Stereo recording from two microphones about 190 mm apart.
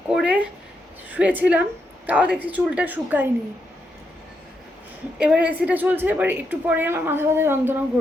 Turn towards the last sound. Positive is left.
turn(degrees=-10)  # may be behind; listen again after turning